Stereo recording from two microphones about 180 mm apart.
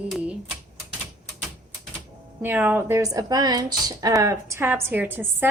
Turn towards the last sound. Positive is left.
turn(degrees=-10)  # may be behind; listen again after turning